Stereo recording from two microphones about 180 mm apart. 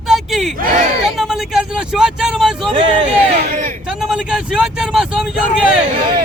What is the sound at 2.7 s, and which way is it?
Speech, 30° right (ahead or behind).